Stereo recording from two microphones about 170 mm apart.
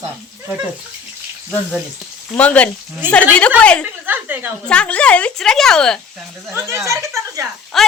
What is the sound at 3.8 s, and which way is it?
Speech, 10° right (ahead or behind).